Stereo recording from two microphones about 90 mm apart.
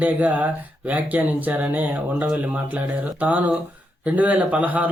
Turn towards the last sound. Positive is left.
turn(degrees=-15)  # may be behind; listen again after turning